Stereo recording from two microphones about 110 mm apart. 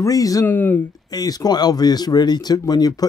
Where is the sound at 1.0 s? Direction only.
35° left (ahead or behind).